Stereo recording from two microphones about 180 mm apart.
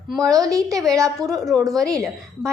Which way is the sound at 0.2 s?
20° right (ahead or behind).